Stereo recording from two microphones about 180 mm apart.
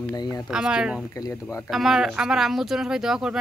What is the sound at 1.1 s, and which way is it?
Speech, 15° left (ahead or behind).